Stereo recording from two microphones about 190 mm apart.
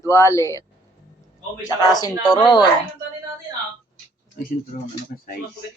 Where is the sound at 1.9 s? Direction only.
25° left (ahead or behind).